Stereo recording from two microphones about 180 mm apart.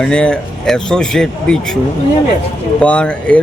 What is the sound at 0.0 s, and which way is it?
Speech, 5° left (ahead or behind).